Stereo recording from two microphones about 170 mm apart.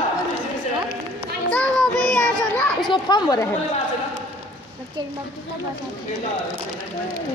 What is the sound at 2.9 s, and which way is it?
Speech, 25° left (ahead or behind).